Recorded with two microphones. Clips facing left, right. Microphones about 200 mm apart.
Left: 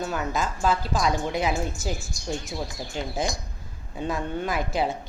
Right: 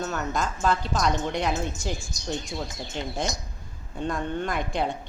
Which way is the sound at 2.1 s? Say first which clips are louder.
Even; 20° right (ahead or behind).